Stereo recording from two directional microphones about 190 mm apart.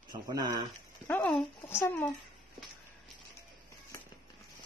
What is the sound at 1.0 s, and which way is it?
A woman's voice, 10° left (ahead or behind).